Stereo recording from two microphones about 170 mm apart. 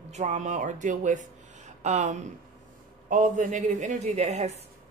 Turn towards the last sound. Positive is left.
turn(degrees=-40)  # may be behind; listen again after turning